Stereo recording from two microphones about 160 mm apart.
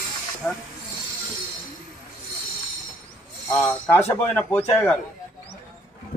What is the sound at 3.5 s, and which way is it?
A man's voice, 15° left (ahead or behind).